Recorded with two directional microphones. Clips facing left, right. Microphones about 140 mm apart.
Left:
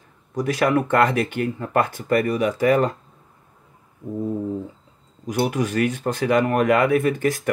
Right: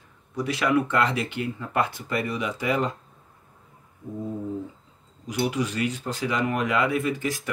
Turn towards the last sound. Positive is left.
turn(degrees=55)  # may be behind; listen again after turning